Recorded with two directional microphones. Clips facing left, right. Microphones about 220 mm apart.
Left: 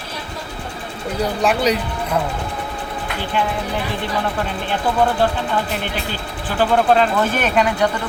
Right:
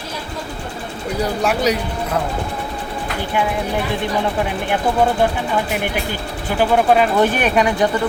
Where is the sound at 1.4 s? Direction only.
10° right (ahead or behind).